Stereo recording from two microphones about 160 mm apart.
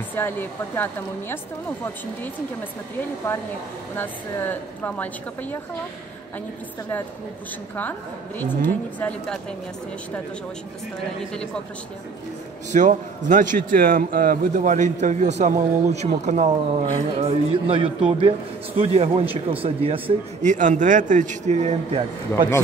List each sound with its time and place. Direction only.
0.1 s a woman's voice: 10° left (ahead or behind)
3.9 s a woman's voice: 15° left (ahead or behind)
8.4 s a woman's voice: 10° left (ahead or behind)
12.7 s a man's voice: 50° right (ahead or behind); by 20.2 s 35° right (ahead or behind)
20.4 s a man's voice: 50° right (ahead or behind)